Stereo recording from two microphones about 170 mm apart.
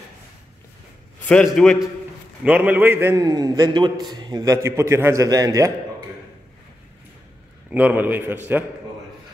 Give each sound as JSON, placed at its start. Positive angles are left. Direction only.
{"t": 1.2, "sound": "a man's voice", "side_deg": 5}
{"t": 2.4, "sound": "a man's voice", "side_deg": -10}
{"t": 7.7, "sound": "a man's voice", "side_deg": -10}